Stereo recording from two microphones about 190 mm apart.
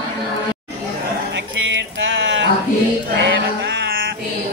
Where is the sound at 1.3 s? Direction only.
75° right (ahead or behind).